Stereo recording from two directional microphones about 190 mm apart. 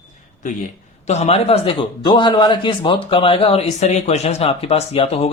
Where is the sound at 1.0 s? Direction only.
35° left (ahead or behind).